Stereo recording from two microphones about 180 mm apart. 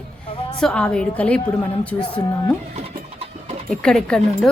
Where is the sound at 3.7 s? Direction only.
Centre (ahead or behind).